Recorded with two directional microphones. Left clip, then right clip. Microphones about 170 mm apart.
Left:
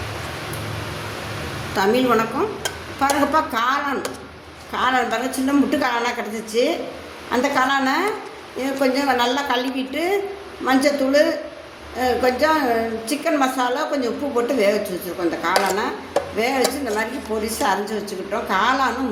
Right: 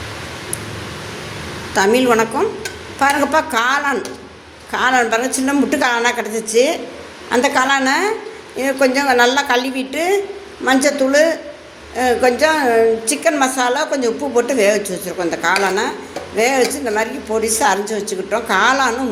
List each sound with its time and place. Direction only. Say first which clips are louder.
1.7 s a woman's voice: right 5 dB; 20° right (ahead or behind)